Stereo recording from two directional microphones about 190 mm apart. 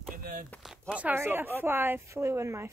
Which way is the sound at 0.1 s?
45° right (ahead or behind).